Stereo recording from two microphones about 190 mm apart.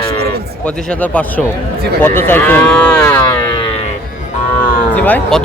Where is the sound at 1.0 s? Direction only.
10° left (ahead or behind).